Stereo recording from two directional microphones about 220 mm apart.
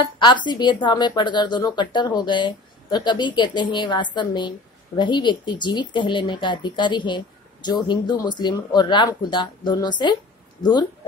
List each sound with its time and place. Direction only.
0.5 s a woman's voice: 20° left (ahead or behind)